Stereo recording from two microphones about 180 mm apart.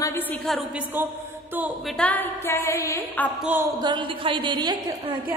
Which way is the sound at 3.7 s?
25° right (ahead or behind).